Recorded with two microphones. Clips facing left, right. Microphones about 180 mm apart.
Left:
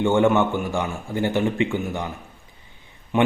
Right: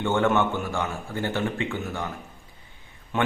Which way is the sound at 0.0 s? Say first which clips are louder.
Left 5 dB; 15° left (ahead or behind).